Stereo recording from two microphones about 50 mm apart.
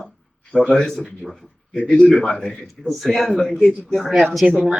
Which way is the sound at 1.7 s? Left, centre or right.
Centre.